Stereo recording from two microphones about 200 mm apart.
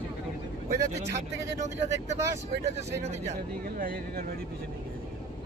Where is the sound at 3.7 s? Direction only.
45° right (ahead or behind).